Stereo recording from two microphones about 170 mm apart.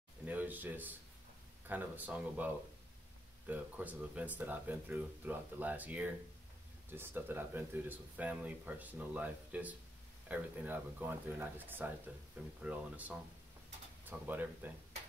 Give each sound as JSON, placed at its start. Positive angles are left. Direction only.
{"t": 0.2, "sound": "a sound", "side_deg": -10}
{"t": 1.7, "sound": "speech", "side_deg": -10}
{"t": 14.2, "sound": "speech", "side_deg": -10}